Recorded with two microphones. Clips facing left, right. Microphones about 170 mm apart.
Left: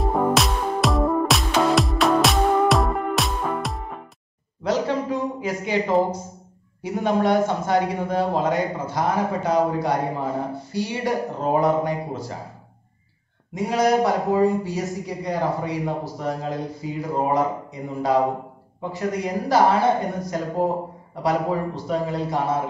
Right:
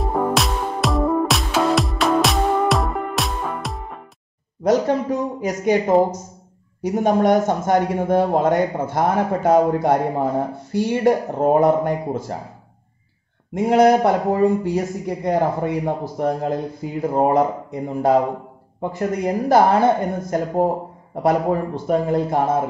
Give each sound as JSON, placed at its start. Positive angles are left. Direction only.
{"t": 0.0, "sound": "music", "side_deg": 0}
{"t": 5.4, "sound": "a man's voice", "side_deg": -45}
{"t": 13.7, "sound": "a man's voice", "side_deg": -55}